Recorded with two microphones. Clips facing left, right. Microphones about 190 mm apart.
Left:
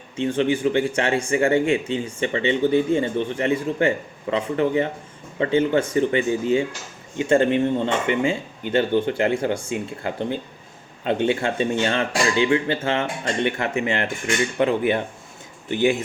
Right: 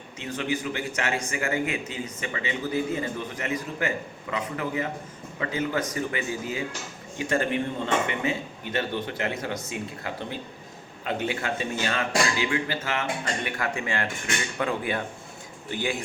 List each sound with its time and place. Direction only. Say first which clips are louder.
0.2 s speech: left 9 dB; 30° left (ahead or behind)